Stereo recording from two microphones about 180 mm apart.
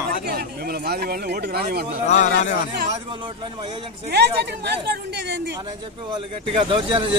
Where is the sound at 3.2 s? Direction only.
25° right (ahead or behind).